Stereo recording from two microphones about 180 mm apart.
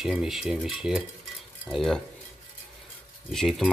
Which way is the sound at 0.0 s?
Centre (ahead or behind).